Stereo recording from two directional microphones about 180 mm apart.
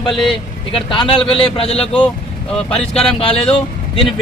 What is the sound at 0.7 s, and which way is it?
A man's voice, 30° left (ahead or behind).